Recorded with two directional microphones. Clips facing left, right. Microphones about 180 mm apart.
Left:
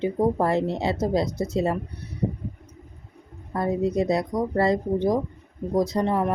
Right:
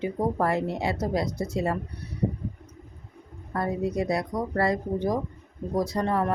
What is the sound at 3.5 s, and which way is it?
Speech, 20° left (ahead or behind).